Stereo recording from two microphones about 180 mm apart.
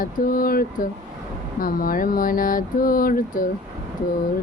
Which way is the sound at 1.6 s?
50° left (ahead or behind).